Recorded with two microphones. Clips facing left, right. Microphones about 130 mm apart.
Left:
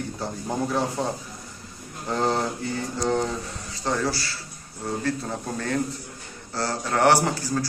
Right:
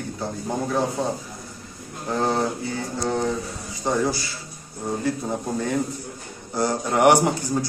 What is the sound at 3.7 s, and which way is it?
A man's voice, 15° right (ahead or behind).